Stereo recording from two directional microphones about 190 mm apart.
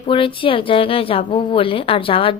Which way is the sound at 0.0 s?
25° left (ahead or behind).